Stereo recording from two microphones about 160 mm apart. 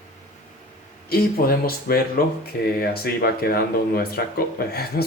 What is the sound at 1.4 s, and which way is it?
Speech, 70° left (ahead or behind).